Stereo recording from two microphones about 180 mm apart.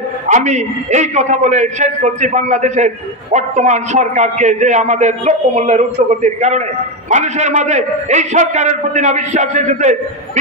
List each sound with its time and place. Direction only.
0.3 s a man's voice: 40° right (ahead or behind)